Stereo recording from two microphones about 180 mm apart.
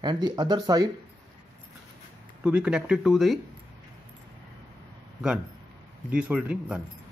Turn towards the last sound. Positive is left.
turn(degrees=-5)  # may be behind; listen again after turning